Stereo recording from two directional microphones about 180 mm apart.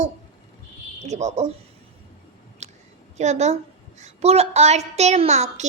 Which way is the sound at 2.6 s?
40° right (ahead or behind).